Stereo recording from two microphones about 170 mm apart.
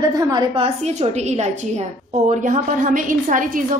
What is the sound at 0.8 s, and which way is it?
A woman's voice, 40° right (ahead or behind).